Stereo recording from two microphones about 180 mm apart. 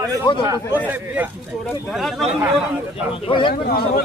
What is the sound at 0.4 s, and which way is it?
Speech, 15° right (ahead or behind).